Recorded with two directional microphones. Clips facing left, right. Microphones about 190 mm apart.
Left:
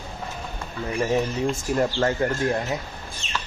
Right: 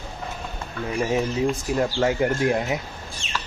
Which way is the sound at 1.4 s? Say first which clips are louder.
Even; centre (ahead or behind).